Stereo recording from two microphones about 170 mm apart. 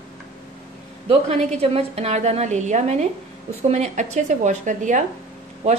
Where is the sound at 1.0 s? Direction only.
35° right (ahead or behind).